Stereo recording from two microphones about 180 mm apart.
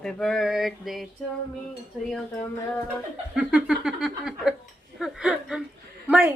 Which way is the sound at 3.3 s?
5° right (ahead or behind).